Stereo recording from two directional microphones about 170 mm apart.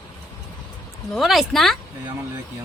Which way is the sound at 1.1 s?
Centre (ahead or behind).